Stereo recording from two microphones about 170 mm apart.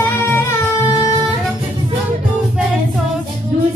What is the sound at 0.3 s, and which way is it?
Music, 15° left (ahead or behind).